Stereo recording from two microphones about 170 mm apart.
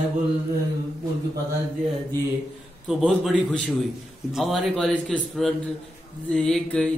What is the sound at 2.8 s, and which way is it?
A man's voice, centre (ahead or behind).